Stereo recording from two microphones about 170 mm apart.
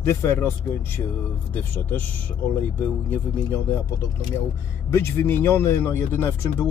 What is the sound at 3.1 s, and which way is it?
Speech, 10° left (ahead or behind).